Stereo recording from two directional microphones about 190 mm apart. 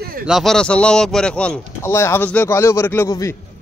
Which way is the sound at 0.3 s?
Centre (ahead or behind).